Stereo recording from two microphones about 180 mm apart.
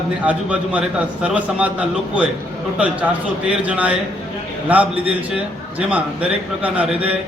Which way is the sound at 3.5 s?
5° right (ahead or behind).